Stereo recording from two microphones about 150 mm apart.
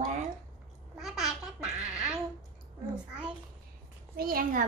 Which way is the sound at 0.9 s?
Centre (ahead or behind).